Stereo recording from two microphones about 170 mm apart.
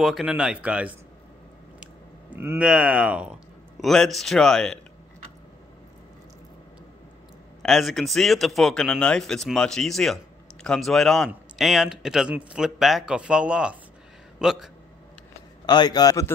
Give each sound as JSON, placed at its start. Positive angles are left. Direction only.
{"t": 0.0, "sound": "speech", "side_deg": 0}
{"t": 2.3, "sound": "a man's voice", "side_deg": -10}
{"t": 7.6, "sound": "a man's voice", "side_deg": 0}
{"t": 15.6, "sound": "a man's voice", "side_deg": 25}